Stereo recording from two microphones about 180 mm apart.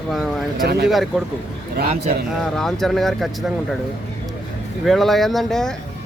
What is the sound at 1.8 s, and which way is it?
Speech, 60° right (ahead or behind).